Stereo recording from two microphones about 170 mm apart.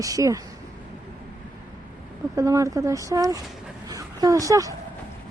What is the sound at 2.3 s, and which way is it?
A woman's voice, 20° right (ahead or behind).